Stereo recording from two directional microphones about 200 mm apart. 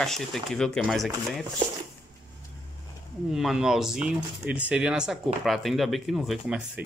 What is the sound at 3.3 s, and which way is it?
Speech, centre (ahead or behind).